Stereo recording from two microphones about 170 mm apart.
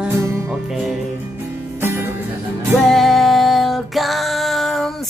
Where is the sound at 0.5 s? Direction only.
Centre (ahead or behind).